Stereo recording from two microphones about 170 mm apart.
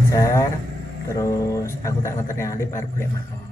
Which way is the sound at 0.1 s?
20° left (ahead or behind).